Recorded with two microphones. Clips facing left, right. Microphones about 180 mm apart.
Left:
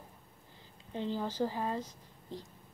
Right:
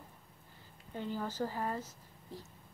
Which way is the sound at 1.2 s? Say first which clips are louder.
Left 1 dB; 15° left (ahead or behind).